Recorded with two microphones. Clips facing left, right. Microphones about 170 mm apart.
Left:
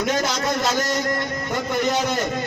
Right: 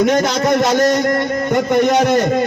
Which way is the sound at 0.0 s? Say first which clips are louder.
Right 8 dB; 65° right (ahead or behind).